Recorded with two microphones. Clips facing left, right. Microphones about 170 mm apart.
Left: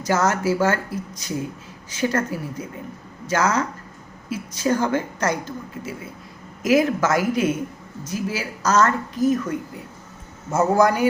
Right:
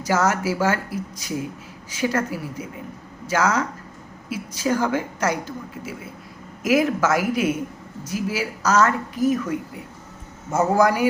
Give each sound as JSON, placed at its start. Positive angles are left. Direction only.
{"t": 0.0, "sound": "a woman's voice", "side_deg": -10}